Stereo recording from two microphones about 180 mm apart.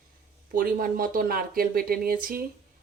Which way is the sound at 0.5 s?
50° right (ahead or behind).